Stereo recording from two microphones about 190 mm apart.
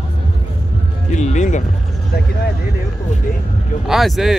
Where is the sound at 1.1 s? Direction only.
40° left (ahead or behind).